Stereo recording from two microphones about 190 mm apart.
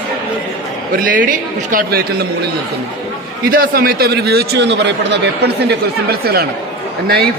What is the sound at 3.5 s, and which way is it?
A man's voice, 50° right (ahead or behind).